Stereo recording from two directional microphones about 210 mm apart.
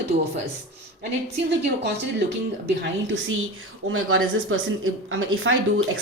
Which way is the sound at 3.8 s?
70° right (ahead or behind).